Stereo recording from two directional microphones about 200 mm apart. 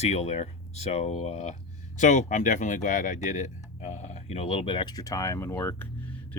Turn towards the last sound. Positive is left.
turn(degrees=10)  # may be behind; listen again after turning